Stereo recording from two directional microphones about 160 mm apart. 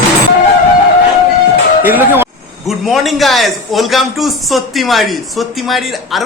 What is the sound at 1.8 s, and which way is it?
Speech, 10° right (ahead or behind).